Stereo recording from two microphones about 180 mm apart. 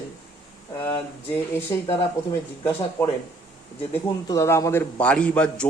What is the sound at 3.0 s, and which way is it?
Speech, 15° left (ahead or behind).